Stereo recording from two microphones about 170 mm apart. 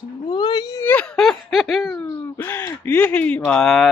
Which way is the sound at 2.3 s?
15° left (ahead or behind).